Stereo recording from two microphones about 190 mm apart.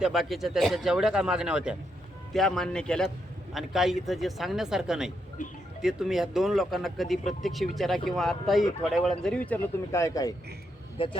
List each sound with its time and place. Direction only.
0.0 s speech: centre (ahead or behind)
5.4 s speech: 45° left (ahead or behind)
5.8 s speech: centre (ahead or behind); by 10.3 s 15° left (ahead or behind)
10.9 s speech: 25° left (ahead or behind)